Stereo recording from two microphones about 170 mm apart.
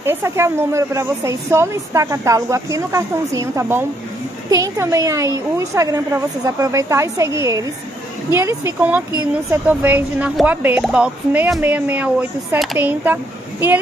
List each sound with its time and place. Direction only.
0.0 s a woman's voice: 15° right (ahead or behind)